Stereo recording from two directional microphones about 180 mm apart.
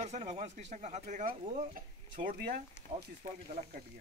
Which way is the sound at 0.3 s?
40° right (ahead or behind).